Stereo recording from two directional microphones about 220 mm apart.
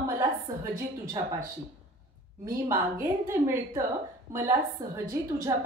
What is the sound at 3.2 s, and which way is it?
Speech, 10° right (ahead or behind).